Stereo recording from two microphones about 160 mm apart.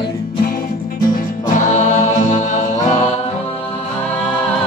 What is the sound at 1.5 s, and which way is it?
Music, 50° left (ahead or behind).